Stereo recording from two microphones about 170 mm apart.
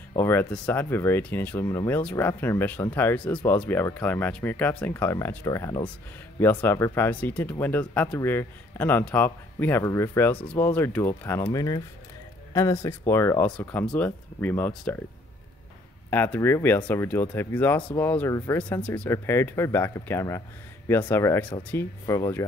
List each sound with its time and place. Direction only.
0.1 s speech: 15° left (ahead or behind)
16.1 s speech: 10° left (ahead or behind)